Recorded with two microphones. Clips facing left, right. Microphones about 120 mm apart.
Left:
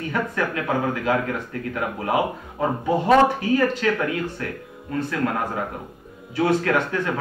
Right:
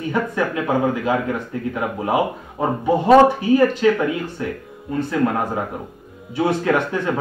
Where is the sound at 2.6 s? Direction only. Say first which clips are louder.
Right 3 dB; 20° right (ahead or behind).